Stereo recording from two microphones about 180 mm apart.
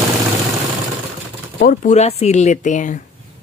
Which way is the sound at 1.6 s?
40° left (ahead or behind).